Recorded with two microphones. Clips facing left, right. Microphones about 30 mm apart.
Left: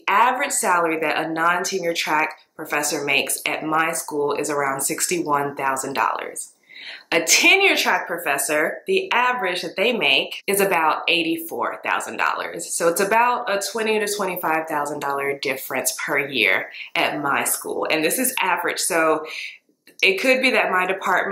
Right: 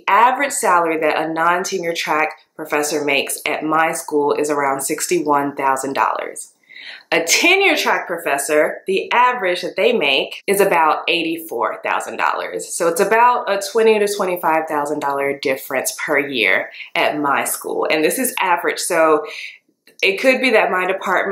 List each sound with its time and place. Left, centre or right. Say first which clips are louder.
0.0 s speech: right 4 dB; centre
4.2 s speech: right 5 dB; centre
4.6 s speech: right 5 dB; centre